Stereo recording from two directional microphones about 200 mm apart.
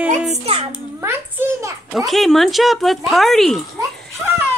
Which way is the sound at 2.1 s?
Centre (ahead or behind).